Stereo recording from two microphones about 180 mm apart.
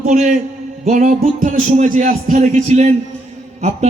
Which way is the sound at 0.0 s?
40° right (ahead or behind).